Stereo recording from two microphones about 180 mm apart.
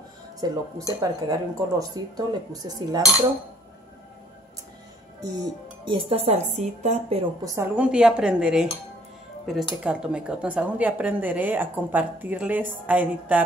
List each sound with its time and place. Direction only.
0.4 s speech: 20° right (ahead or behind)
5.2 s speech: 25° right (ahead or behind)
7.4 s a woman's voice: 10° right (ahead or behind)